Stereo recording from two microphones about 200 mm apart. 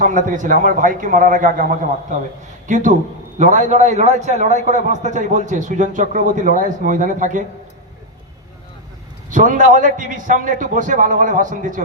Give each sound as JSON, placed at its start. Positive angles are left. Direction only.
{"t": 0.0, "sound": "a man's voice", "side_deg": -40}
{"t": 9.3, "sound": "a man's voice", "side_deg": -40}